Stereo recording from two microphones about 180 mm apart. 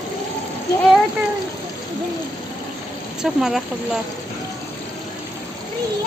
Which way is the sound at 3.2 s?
Centre (ahead or behind).